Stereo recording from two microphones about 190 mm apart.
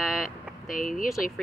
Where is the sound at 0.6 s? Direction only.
45° left (ahead or behind).